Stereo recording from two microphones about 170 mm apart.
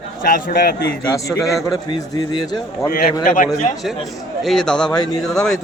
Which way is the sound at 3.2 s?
50° left (ahead or behind).